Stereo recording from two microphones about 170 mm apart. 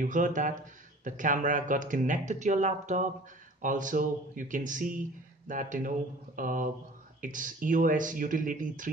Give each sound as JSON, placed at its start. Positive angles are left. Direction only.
{"t": 0.0, "sound": "speech", "side_deg": -50}